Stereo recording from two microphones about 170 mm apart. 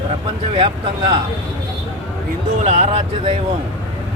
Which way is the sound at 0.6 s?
30° right (ahead or behind).